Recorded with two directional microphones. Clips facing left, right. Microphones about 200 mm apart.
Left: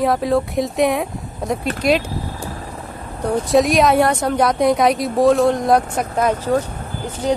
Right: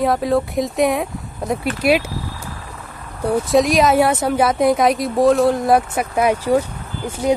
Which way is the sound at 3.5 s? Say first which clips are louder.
Left 1 dB; centre (ahead or behind).